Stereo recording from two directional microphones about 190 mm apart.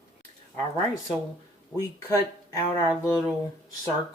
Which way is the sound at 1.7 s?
20° left (ahead or behind).